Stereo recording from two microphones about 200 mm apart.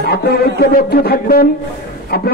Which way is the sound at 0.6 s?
45° left (ahead or behind).